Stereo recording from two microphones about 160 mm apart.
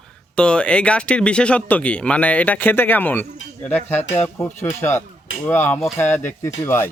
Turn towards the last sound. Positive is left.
turn(degrees=15)  # may be behind; listen again after turning